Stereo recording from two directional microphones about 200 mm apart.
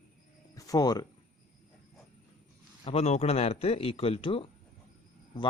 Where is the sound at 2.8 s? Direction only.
30° left (ahead or behind).